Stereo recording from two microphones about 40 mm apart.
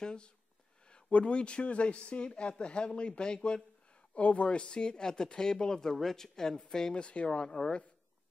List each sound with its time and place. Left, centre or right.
0.0 s speech: left
4.1 s speech: left
7.1 s speech: left